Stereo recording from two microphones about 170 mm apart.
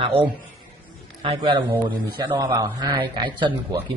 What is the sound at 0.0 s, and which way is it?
A man's voice, 30° right (ahead or behind).